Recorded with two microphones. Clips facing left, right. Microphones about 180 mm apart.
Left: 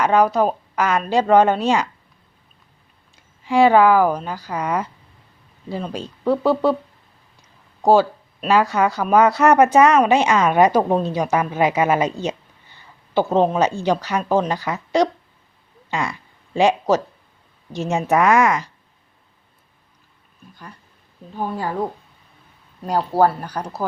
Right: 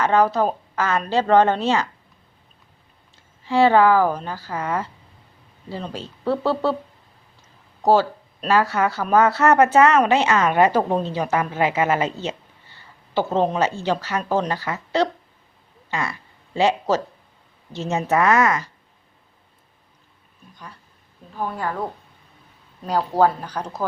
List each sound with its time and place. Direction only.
0.0 s speech: 15° left (ahead or behind)
3.4 s speech: 15° left (ahead or behind)
7.8 s speech: 10° left (ahead or behind)
12.2 s a sound: 15° left (ahead or behind)
13.6 s speech: 15° left (ahead or behind)
21.3 s speech: 20° left (ahead or behind)
22.8 s speech: 10° left (ahead or behind)